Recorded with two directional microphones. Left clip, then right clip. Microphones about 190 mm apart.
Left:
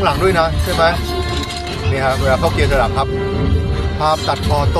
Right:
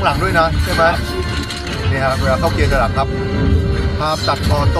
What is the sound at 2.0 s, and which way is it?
Speech, 20° left (ahead or behind).